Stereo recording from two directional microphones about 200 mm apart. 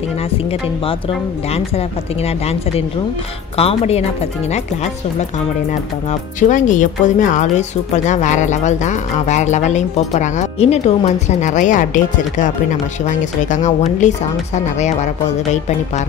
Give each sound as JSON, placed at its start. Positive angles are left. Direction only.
{"t": 1.5, "sound": "speech", "side_deg": 30}
{"t": 3.5, "sound": "speech", "side_deg": 30}
{"t": 6.5, "sound": "speech", "side_deg": 40}